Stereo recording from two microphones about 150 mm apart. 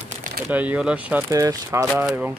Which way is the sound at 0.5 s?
10° right (ahead or behind).